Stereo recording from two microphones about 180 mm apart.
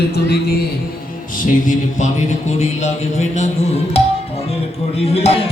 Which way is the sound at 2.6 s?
40° left (ahead or behind).